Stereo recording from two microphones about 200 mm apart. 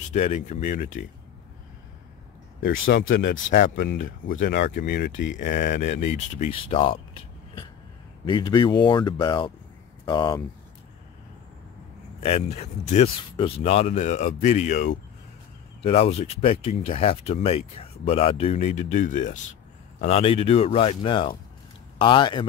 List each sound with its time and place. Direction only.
0.1 s speech: 35° left (ahead or behind)
2.8 s speech: 75° left (ahead or behind)
3.5 s speech: 45° left (ahead or behind); by 5.4 s 65° left (ahead or behind)
5.4 s speech: 40° left (ahead or behind); by 10.4 s 20° left (ahead or behind)
12.2 s speech: 30° left (ahead or behind)